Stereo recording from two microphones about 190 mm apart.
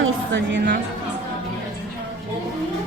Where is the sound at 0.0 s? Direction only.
75° right (ahead or behind).